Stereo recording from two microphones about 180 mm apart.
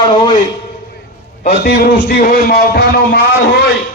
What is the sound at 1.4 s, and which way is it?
A man's voice, 50° left (ahead or behind).